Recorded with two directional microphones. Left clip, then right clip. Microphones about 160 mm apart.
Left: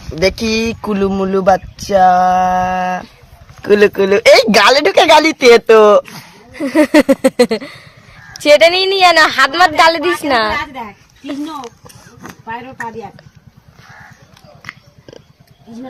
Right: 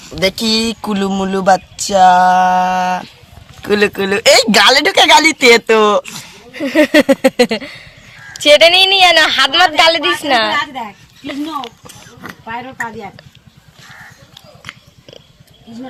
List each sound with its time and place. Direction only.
0.2 s speech: 50° left (ahead or behind); by 3.1 s 25° left (ahead or behind)
3.6 s speech: 50° left (ahead or behind); by 6.1 s 75° left (ahead or behind)
6.1 s a sound: 15° left (ahead or behind)
8.4 s a woman's voice: 20° left (ahead or behind)